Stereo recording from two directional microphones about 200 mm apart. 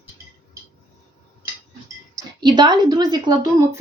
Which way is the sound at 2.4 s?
20° right (ahead or behind).